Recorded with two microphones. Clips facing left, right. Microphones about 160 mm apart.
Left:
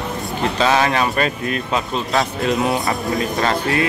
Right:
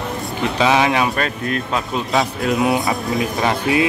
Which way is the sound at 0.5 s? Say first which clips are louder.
Right 1 dB; 10° right (ahead or behind).